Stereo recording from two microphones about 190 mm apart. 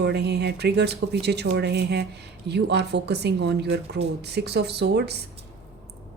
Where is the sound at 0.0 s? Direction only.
60° right (ahead or behind).